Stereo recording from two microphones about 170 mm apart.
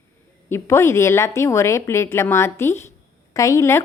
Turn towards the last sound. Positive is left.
turn(degrees=15)  # may be behind; listen again after turning